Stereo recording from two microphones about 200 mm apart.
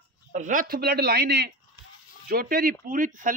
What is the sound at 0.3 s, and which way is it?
A man's voice, 40° right (ahead or behind).